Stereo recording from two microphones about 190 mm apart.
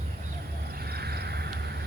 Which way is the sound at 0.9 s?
55° right (ahead or behind).